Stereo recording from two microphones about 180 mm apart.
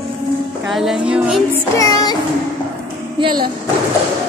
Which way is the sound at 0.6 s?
Centre (ahead or behind).